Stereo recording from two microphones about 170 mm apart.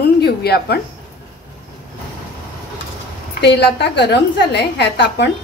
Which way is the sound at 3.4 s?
85° left.